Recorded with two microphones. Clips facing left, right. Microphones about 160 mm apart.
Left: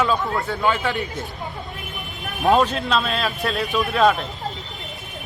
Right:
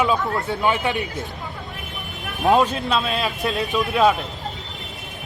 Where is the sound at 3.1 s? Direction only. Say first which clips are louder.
Even; 20° right (ahead or behind).